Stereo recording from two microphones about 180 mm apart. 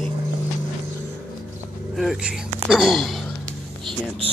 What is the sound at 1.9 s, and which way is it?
Speech, centre (ahead or behind).